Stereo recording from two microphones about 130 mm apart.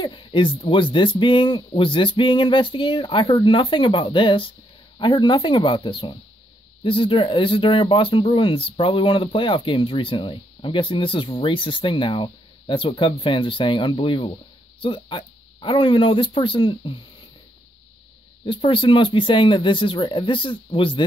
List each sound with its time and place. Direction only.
0.0 s speech: 40° left (ahead or behind)
18.4 s speech: 40° left (ahead or behind)